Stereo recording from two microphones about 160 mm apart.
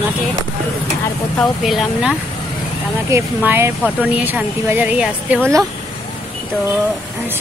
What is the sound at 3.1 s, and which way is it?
Speech, 15° right (ahead or behind).